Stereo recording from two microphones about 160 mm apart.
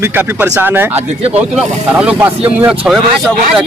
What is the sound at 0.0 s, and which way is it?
Speech, 15° right (ahead or behind).